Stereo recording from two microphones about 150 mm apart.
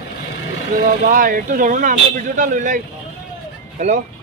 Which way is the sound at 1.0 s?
65° right (ahead or behind).